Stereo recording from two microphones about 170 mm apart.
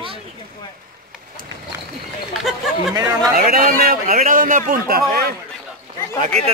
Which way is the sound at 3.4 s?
55° right (ahead or behind).